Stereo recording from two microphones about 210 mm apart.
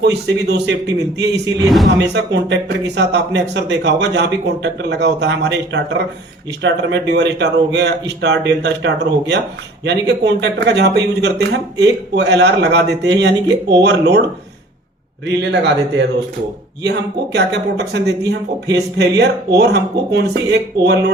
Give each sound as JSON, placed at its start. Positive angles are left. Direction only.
{"t": 0.0, "sound": "speech", "side_deg": -55}
{"t": 1.6, "sound": "speech", "side_deg": 0}
{"t": 1.9, "sound": "speech", "side_deg": -55}
{"t": 15.4, "sound": "speech", "side_deg": -55}
{"t": 17.3, "sound": "speech", "side_deg": -55}